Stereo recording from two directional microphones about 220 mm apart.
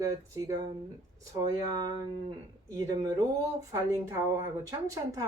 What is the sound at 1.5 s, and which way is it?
A woman's voice, 20° right (ahead or behind).